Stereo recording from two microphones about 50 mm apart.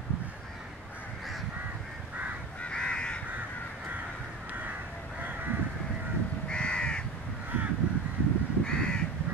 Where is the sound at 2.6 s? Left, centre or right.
Centre.